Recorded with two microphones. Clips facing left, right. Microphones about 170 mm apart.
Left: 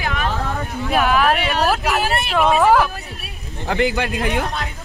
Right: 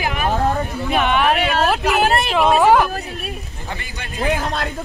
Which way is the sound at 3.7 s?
70° left (ahead or behind).